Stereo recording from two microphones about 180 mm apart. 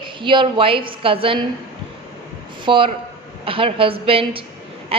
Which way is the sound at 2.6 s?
30° right (ahead or behind).